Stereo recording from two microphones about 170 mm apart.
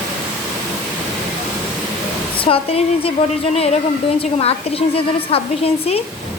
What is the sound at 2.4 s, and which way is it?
A woman's voice, 35° left (ahead or behind).